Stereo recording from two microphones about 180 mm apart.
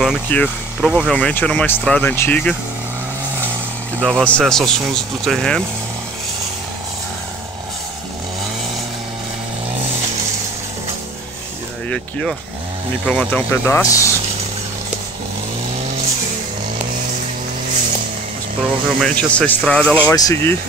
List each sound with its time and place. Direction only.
0.0 s speech: 5° left (ahead or behind)
4.0 s speech: 10° right (ahead or behind)
4.3 s speech: 5° left (ahead or behind)
11.9 s speech: 5° left (ahead or behind)
18.9 s speech: 5° left (ahead or behind)
20.2 s speech: 20° left (ahead or behind)